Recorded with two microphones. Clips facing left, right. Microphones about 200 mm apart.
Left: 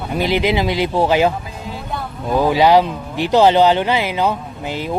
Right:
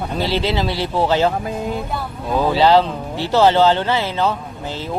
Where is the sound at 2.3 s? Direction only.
15° left (ahead or behind).